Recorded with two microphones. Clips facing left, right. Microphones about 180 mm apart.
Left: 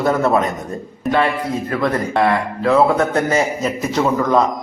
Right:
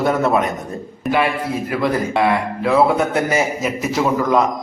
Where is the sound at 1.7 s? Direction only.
5° right (ahead or behind).